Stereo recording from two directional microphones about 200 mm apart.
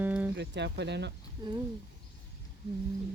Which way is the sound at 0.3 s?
60° right (ahead or behind).